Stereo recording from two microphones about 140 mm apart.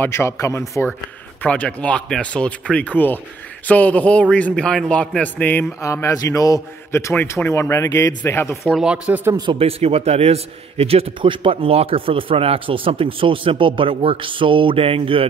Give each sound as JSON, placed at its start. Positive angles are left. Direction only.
{"t": 0.0, "sound": "a man's voice", "side_deg": 20}
{"t": 8.6, "sound": "speech", "side_deg": -5}
{"t": 9.5, "sound": "a man's voice", "side_deg": -45}